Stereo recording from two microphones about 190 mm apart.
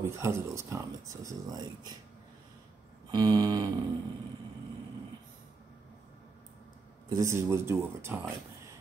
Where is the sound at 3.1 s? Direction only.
20° right (ahead or behind).